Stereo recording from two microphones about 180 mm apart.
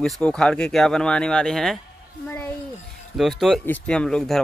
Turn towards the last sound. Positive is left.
turn(degrees=5)  # may be behind; listen again after turning